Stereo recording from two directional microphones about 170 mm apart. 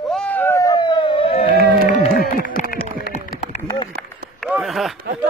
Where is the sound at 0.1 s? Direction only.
5° left (ahead or behind); by 1.5 s 35° left (ahead or behind).